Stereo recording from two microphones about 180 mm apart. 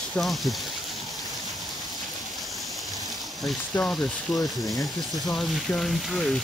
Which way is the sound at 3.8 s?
10° left (ahead or behind).